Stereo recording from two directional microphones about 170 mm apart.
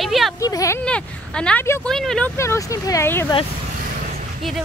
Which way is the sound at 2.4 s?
20° left (ahead or behind).